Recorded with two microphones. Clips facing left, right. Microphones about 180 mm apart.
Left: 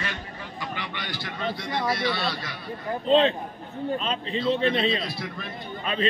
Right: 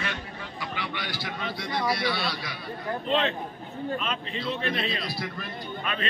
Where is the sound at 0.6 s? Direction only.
10° right (ahead or behind).